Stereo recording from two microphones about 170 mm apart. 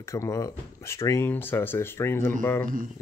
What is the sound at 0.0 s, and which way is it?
Speech, 15° left (ahead or behind).